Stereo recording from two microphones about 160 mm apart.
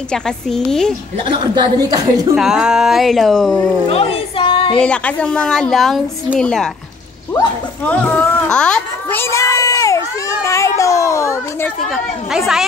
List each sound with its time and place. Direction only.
0.1 s a woman's voice: 5° left (ahead or behind)
1.2 s a woman's voice: 25° right (ahead or behind)
2.3 s a woman's voice: 5° right (ahead or behind)
3.9 s music: 35° left (ahead or behind)
4.7 s a woman's voice: 5° left (ahead or behind)
7.8 s a child's voice: 10° left (ahead or behind)
11.9 s a woman's voice: centre (ahead or behind)